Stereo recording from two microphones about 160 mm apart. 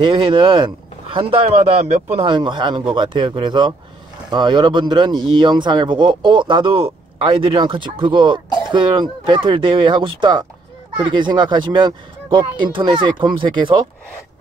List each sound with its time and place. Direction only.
0.0 s speech: 30° right (ahead or behind)
2.2 s speech: 30° right (ahead or behind)